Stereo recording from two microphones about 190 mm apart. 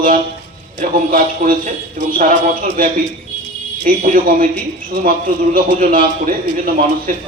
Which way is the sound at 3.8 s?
45° right (ahead or behind).